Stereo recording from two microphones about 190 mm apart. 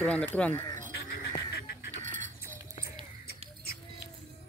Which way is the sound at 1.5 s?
60° left (ahead or behind).